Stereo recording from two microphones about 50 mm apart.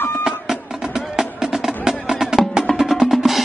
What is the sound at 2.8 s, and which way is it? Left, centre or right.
Drum, centre.